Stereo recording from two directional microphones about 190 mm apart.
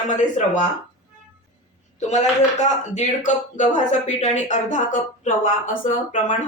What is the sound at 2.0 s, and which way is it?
Speech, 40° left (ahead or behind).